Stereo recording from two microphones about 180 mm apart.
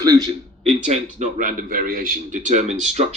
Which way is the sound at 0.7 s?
40° right (ahead or behind).